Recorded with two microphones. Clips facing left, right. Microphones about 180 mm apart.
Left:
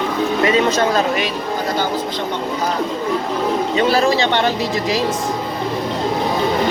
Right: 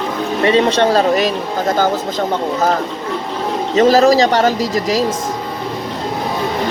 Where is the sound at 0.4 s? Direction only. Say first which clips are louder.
Right 5 dB; 30° right (ahead or behind).